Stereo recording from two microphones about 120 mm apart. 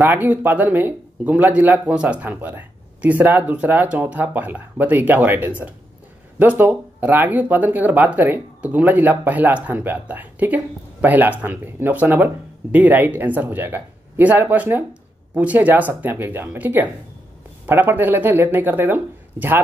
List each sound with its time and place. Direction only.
0.0 s speech: 15° right (ahead or behind)